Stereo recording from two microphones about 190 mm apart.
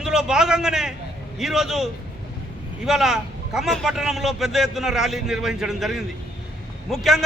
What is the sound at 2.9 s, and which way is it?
Speech, centre (ahead or behind).